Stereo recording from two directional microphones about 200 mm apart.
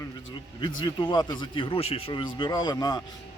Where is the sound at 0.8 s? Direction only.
20° left (ahead or behind).